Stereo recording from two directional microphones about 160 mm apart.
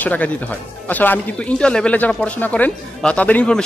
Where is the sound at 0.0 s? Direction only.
10° left (ahead or behind).